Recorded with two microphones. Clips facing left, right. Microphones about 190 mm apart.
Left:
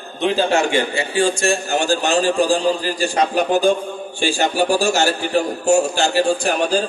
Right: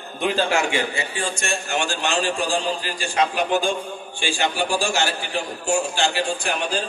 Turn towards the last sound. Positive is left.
turn(degrees=40)  # may be behind; listen again after turning